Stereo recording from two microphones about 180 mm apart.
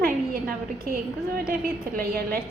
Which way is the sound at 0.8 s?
55° right (ahead or behind).